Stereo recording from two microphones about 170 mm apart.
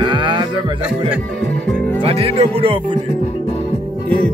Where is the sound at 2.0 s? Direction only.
35° right (ahead or behind).